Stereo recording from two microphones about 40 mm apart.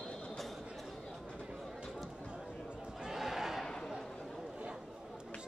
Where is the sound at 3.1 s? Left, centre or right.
Centre.